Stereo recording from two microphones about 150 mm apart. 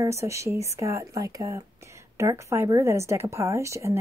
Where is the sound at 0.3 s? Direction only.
20° right (ahead or behind).